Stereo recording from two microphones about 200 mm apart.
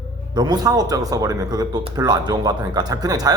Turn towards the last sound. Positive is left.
turn(degrees=-20)  # may be behind; listen again after turning